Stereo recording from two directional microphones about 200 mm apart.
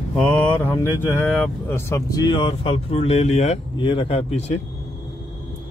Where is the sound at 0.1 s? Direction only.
10° left (ahead or behind); by 4.3 s 25° left (ahead or behind).